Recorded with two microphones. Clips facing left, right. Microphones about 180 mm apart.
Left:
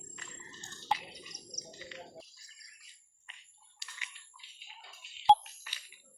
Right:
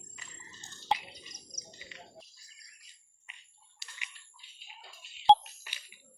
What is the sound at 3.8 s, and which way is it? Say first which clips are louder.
Bathtub: left 1 dB; centre (ahead or behind).